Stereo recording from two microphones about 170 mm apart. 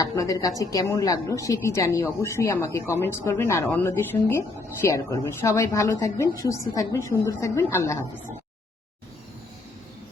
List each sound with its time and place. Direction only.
0.0 s a woman's voice: 20° left (ahead or behind)